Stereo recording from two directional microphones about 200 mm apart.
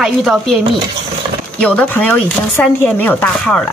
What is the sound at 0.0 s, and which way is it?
Speech, centre (ahead or behind).